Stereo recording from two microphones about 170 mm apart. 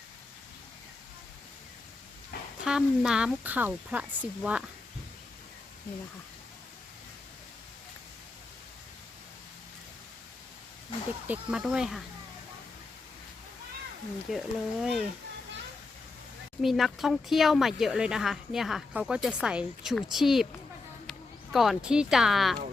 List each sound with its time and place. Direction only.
2.3 s a sound: 65° left (ahead or behind)
2.6 s speech: 5° right (ahead or behind)
11.3 s speech: 5° right (ahead or behind)
14.3 s speech: centre (ahead or behind)
16.6 s speech: centre (ahead or behind)